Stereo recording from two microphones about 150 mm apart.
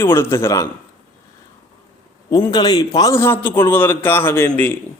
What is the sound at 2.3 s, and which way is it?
A man's voice, 25° left (ahead or behind).